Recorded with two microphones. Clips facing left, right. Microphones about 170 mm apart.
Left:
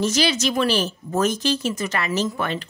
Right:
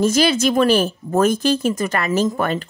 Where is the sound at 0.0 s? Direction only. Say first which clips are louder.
Right 5 dB; 50° right (ahead or behind).